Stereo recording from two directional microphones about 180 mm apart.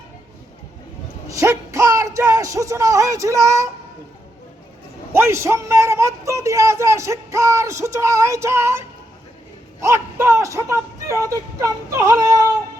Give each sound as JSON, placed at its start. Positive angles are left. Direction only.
{"t": 1.3, "sound": "speech", "side_deg": -15}
{"t": 5.1, "sound": "a man's voice", "side_deg": -15}
{"t": 9.8, "sound": "a man's voice", "side_deg": -15}